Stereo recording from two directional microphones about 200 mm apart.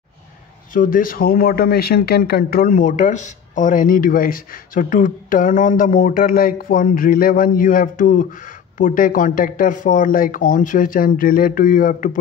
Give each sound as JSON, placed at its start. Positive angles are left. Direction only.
{"t": 0.7, "sound": "speech", "side_deg": 45}